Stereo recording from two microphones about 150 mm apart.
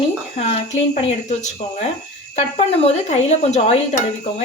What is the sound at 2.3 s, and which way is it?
A woman's voice, 45° left (ahead or behind).